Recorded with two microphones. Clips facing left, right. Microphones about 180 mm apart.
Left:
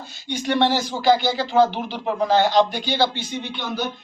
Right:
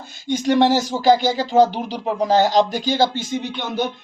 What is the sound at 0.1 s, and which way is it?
Speech, 45° right (ahead or behind).